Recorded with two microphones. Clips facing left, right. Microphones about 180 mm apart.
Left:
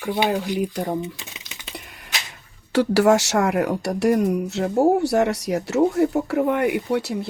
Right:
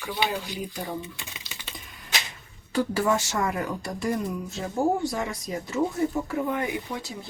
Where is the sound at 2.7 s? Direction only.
80° left.